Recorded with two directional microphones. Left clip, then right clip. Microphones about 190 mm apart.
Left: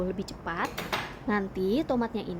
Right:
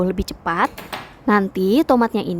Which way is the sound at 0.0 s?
40° right (ahead or behind).